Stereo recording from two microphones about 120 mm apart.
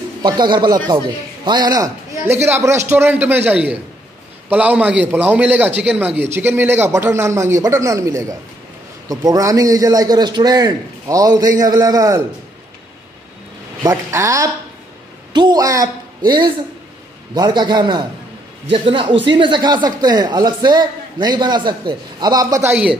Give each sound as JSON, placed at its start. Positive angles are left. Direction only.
{"t": 0.2, "sound": "a man's voice", "side_deg": -40}
{"t": 2.4, "sound": "a man's voice", "side_deg": -20}
{"t": 13.8, "sound": "a man's voice", "side_deg": -25}